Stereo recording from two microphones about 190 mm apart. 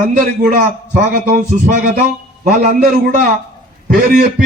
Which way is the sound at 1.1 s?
45° right (ahead or behind).